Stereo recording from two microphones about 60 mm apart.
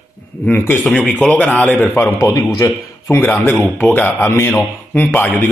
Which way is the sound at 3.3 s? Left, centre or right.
Left.